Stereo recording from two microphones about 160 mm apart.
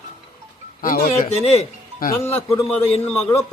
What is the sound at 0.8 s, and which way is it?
Speech, 60° left (ahead or behind).